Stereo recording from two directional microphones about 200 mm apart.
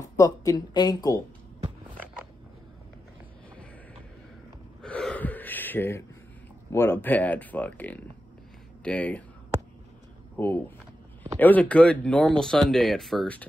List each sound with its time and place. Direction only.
0.0 s speech: 15° left (ahead or behind)
4.8 s gasp: 5° left (ahead or behind)
6.7 s speech: 10° left (ahead or behind)
10.3 s speech: 10° left (ahead or behind)